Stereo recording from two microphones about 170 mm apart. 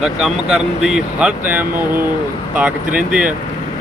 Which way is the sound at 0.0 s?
5° right (ahead or behind).